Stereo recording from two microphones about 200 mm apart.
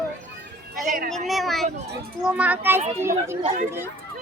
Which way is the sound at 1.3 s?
Centre (ahead or behind).